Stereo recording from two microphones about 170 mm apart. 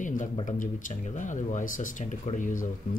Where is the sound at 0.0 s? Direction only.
50° left (ahead or behind).